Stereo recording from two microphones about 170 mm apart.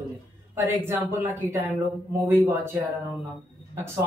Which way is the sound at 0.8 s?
10° right (ahead or behind).